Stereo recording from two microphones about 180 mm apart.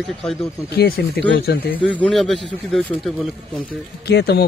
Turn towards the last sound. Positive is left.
turn(degrees=60)  # may be behind; listen again after turning